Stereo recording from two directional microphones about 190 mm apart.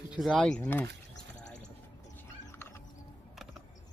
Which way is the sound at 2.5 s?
15° left (ahead or behind).